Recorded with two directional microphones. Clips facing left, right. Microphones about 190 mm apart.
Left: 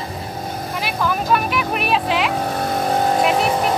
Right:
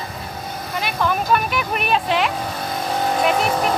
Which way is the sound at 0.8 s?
Centre (ahead or behind).